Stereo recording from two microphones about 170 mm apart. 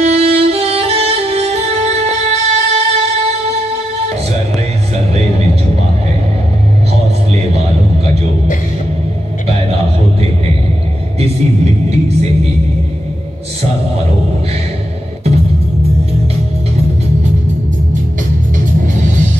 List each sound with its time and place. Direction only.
0.0 s music: 40° right (ahead or behind)
7.5 s a sound: 40° right (ahead or behind)
11.1 s music: 40° right (ahead or behind)
15.2 s music: 40° right (ahead or behind)